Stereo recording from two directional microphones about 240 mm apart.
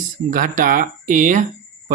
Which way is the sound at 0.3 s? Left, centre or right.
Right.